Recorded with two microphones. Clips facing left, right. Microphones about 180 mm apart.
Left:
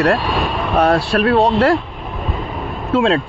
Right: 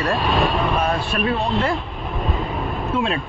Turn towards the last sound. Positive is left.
turn(degrees=90)